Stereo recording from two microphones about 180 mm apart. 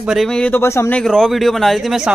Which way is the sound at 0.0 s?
Centre (ahead or behind).